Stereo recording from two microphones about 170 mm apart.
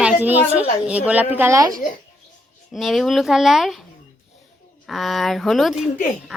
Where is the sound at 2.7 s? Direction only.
Centre (ahead or behind).